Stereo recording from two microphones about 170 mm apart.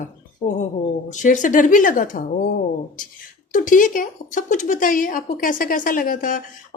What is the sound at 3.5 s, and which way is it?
Speech, 50° left (ahead or behind).